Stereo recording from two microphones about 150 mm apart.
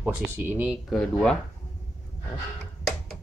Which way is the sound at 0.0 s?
15° right (ahead or behind).